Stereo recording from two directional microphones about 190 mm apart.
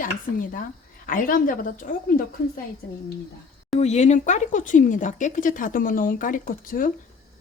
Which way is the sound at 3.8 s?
35° left (ahead or behind).